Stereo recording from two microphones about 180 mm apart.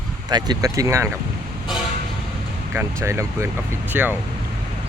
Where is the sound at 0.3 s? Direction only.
20° right (ahead or behind).